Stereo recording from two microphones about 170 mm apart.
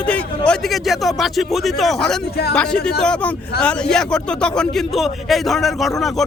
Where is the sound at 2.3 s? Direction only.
70° left (ahead or behind).